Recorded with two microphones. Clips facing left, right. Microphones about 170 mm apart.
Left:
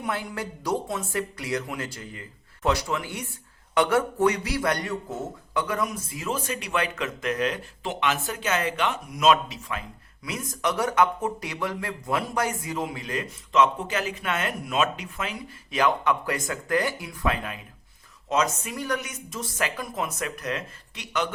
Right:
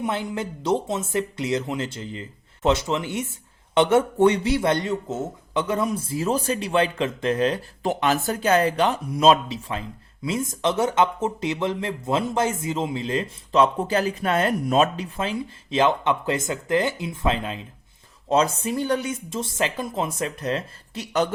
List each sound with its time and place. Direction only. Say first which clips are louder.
0.0 s speech: right 4 dB; 25° right (ahead or behind)